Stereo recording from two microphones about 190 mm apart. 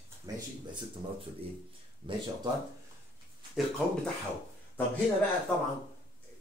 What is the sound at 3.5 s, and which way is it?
Speech, centre (ahead or behind).